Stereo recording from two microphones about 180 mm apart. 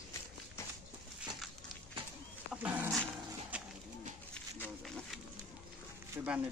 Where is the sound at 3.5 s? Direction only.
5° right (ahead or behind).